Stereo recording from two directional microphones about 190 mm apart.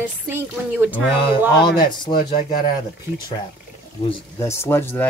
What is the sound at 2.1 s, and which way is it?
Speech, 50° left (ahead or behind).